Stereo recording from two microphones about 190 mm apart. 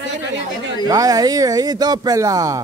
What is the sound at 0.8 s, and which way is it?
Speech, 20° right (ahead or behind).